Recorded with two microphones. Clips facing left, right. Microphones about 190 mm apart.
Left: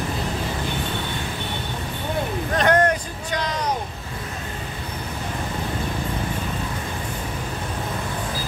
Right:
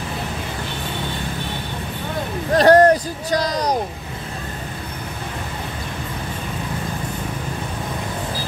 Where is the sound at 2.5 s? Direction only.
35° right (ahead or behind).